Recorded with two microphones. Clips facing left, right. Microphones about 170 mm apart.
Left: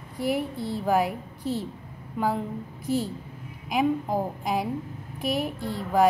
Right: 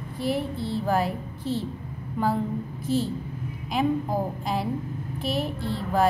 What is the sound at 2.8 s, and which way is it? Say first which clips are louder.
A woman's voice: right 1 dB; 15° left (ahead or behind).